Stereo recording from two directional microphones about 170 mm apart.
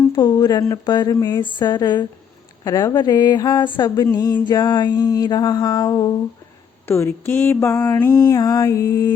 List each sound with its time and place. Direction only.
0.1 s speech: 25° left (ahead or behind)
6.9 s mantra: 15° left (ahead or behind)